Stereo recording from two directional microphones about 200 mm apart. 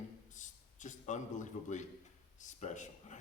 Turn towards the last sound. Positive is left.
turn(degrees=35)  # may be behind; listen again after turning